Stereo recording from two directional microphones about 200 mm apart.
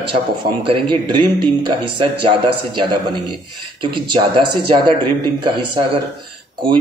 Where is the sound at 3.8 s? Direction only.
25° right (ahead or behind).